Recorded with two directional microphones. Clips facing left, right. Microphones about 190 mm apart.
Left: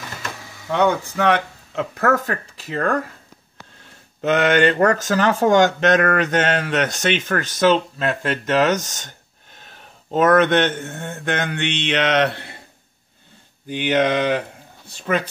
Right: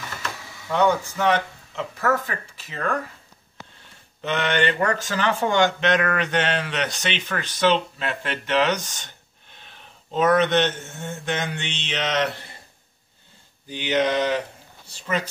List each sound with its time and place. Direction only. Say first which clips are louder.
1.1 s speech: left 3 dB; 65° left (ahead or behind); by 3.0 s 45° left (ahead or behind)
4.2 s speech: left 7 dB; 45° left (ahead or behind); by 12.5 s 65° left (ahead or behind)
13.7 s mantra: left 3 dB; 60° left (ahead or behind)